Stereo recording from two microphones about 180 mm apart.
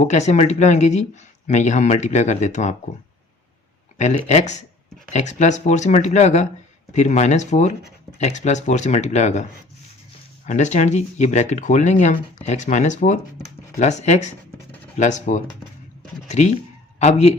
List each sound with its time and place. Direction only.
0.0 s speech: 40° left (ahead or behind)
3.9 s speech: 40° left (ahead or behind)